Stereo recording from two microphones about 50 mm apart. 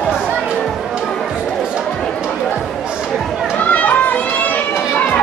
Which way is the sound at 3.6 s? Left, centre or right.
Left.